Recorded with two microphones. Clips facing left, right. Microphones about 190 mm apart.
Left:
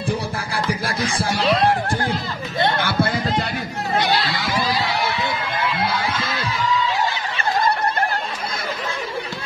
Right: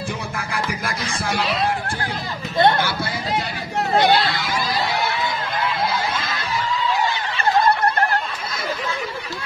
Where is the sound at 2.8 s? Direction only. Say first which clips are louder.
Left 4 dB; 55° left (ahead or behind).